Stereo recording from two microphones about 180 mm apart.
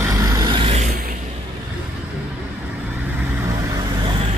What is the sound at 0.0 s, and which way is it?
Vehicle, 20° right (ahead or behind).